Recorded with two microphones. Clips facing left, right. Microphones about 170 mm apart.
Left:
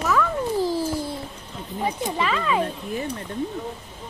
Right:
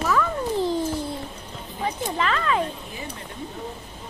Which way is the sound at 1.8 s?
10° left (ahead or behind).